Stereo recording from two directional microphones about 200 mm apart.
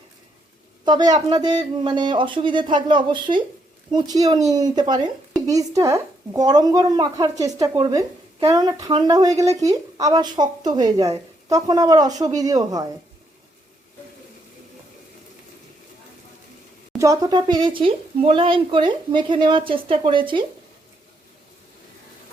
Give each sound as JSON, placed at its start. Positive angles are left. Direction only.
{"t": 0.9, "sound": "a woman's voice", "side_deg": -20}
{"t": 17.0, "sound": "speech", "side_deg": -20}